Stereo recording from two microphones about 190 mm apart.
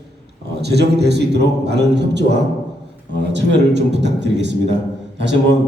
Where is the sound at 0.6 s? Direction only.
60° right (ahead or behind).